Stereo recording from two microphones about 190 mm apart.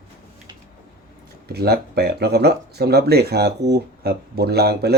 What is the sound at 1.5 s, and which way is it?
Speech, 55° right (ahead or behind).